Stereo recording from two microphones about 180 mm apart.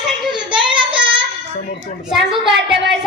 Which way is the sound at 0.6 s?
25° right (ahead or behind).